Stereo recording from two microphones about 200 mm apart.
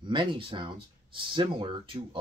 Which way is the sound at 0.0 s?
25° right (ahead or behind).